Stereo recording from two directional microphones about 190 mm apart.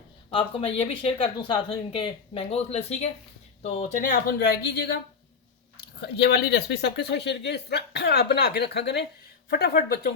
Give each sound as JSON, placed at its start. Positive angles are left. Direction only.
{"t": 0.3, "sound": "speech", "side_deg": 30}
{"t": 4.1, "sound": "speech", "side_deg": 55}